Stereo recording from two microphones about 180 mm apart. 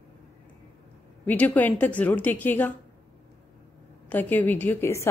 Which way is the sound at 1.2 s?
10° left (ahead or behind).